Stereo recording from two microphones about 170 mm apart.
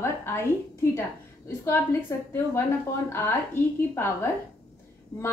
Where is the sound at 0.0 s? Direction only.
15° left (ahead or behind).